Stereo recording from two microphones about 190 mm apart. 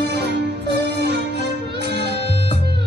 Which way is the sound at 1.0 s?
60° right (ahead or behind).